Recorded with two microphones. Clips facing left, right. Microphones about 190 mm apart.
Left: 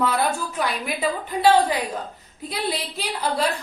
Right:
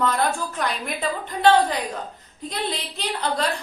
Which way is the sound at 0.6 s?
5° left (ahead or behind).